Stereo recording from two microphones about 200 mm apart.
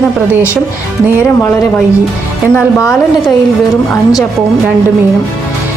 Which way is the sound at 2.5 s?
15° left (ahead or behind).